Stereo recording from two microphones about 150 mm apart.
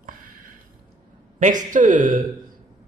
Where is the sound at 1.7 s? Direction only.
60° right (ahead or behind).